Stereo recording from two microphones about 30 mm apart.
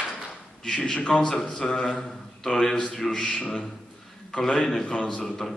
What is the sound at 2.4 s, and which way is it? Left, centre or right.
Speech, centre.